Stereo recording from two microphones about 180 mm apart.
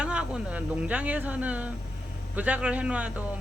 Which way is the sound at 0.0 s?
5° right (ahead or behind).